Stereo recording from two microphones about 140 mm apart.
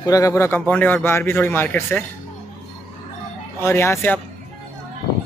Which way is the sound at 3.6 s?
20° left (ahead or behind).